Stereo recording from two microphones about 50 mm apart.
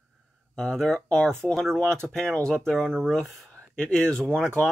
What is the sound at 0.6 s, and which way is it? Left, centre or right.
Speech, centre.